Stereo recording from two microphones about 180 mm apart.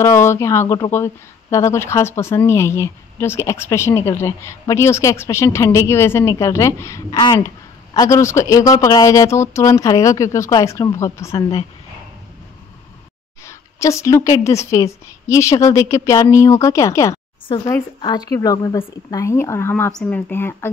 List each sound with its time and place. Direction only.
0.0 s speech: 15° left (ahead or behind)
13.5 s speech: 15° left (ahead or behind)